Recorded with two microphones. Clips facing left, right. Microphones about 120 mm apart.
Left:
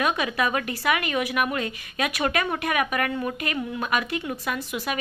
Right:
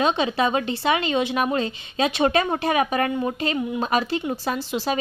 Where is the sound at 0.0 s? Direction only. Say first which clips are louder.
Right 4 dB; 25° right (ahead or behind).